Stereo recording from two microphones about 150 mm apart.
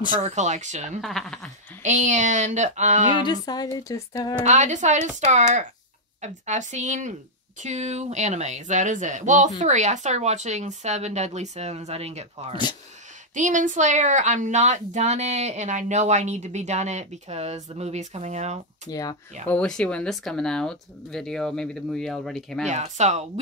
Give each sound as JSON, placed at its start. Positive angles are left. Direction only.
{"t": 0.1, "sound": "speech", "side_deg": -50}
{"t": 1.0, "sound": "speech", "side_deg": 0}
{"t": 1.8, "sound": "speech", "side_deg": -55}
{"t": 3.3, "sound": "a woman's voice", "side_deg": 25}
{"t": 4.5, "sound": "speech", "side_deg": -55}
{"t": 13.3, "sound": "speech", "side_deg": -55}
{"t": 18.9, "sound": "a woman's voice", "side_deg": 25}
{"t": 19.4, "sound": "speech", "side_deg": 5}
{"t": 22.7, "sound": "speech", "side_deg": -50}